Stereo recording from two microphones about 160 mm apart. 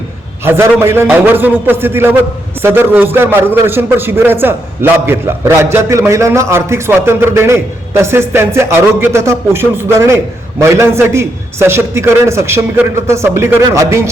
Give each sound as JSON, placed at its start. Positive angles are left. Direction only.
{"t": 0.4, "sound": "a man's voice", "side_deg": -15}